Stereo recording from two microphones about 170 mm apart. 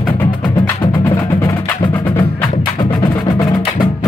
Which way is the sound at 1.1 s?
15° left (ahead or behind).